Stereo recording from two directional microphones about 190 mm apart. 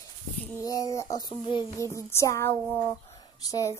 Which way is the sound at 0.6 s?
20° left (ahead or behind).